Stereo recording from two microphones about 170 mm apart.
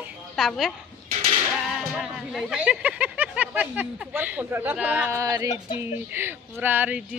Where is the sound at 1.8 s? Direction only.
Centre (ahead or behind).